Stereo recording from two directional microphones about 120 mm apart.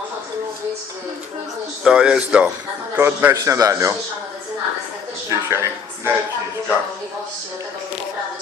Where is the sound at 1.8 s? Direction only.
5° right (ahead or behind).